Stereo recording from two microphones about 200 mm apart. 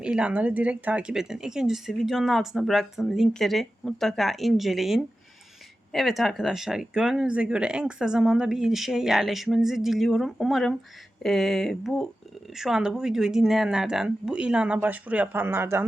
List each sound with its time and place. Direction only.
0.0 s speech: 5° right (ahead or behind)